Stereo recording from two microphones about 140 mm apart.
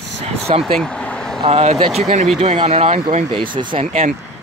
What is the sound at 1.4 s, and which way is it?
Speech, 45° right (ahead or behind).